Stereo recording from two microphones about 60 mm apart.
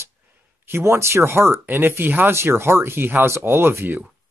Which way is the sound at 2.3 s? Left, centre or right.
Right.